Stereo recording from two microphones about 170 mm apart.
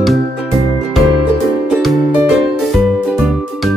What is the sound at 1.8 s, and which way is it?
Music, centre (ahead or behind).